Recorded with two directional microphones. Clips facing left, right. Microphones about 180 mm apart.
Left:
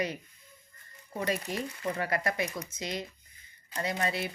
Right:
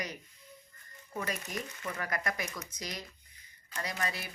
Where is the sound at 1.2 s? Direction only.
30° left (ahead or behind).